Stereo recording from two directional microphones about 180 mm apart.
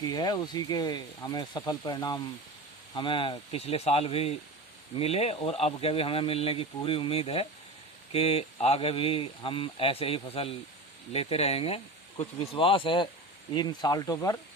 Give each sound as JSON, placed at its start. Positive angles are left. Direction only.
{"t": 0.0, "sound": "speech", "side_deg": 20}